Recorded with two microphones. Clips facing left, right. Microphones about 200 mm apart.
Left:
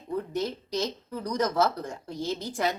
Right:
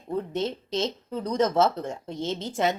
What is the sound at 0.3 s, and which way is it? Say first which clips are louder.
Speech: right 1 dB; 25° right (ahead or behind).